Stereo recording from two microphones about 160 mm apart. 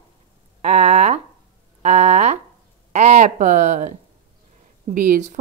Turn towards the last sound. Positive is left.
turn(degrees=-50)  # may be behind; listen again after turning